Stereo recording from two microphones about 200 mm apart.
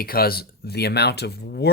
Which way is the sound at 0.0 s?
50° left (ahead or behind).